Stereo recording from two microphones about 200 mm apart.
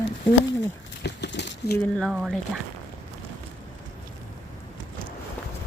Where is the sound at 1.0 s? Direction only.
60° left (ahead or behind).